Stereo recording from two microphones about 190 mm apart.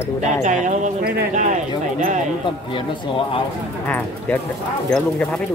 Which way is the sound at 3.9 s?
10° left (ahead or behind).